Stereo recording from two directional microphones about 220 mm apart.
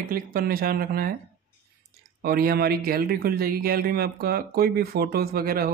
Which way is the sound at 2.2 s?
45° right (ahead or behind).